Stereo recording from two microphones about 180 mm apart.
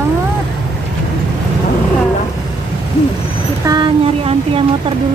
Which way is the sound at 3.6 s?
25° right (ahead or behind).